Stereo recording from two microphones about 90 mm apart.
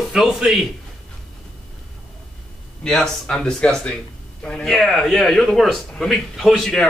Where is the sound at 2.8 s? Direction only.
5° left (ahead or behind).